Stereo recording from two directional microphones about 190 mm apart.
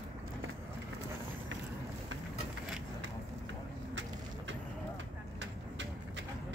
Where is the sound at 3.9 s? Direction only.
80° right.